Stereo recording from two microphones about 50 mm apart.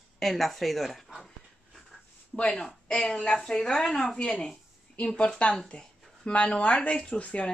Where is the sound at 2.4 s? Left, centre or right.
Centre.